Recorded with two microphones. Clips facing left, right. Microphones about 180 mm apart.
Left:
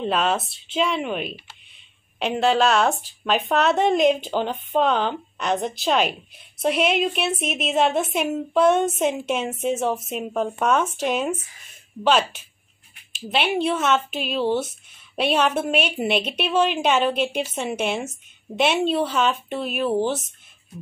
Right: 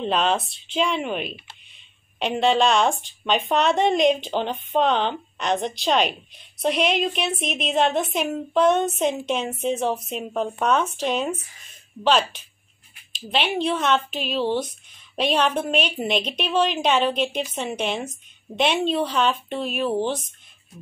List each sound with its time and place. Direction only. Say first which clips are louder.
0.0 s speech: even; 5° left (ahead or behind)